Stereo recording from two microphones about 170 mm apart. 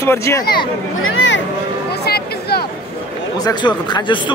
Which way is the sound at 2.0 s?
70° left (ahead or behind).